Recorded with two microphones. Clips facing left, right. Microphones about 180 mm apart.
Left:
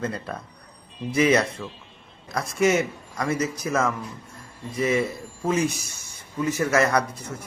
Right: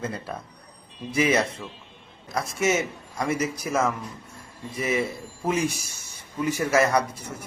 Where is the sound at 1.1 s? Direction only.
25° right (ahead or behind).